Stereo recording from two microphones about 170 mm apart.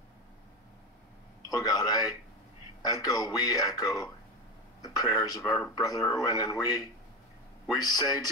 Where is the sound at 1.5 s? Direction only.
20° left (ahead or behind).